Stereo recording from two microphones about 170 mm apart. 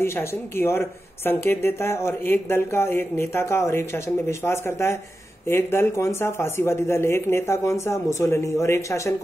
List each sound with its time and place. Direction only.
0.0 s speech: 15° left (ahead or behind)